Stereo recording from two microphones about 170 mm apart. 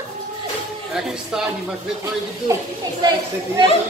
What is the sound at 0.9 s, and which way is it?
Speech, 5° right (ahead or behind).